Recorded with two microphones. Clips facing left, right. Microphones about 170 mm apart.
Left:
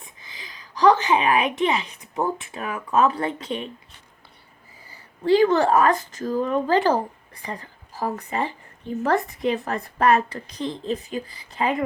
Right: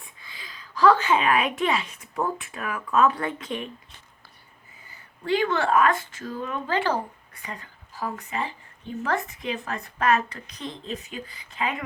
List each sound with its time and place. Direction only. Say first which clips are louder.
0.3 s speech: even; 20° left (ahead or behind)
4.9 s a woman's voice: left 7 dB; 35° left (ahead or behind)